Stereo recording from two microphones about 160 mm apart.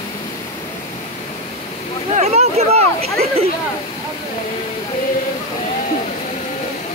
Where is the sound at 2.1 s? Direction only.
45° right (ahead or behind).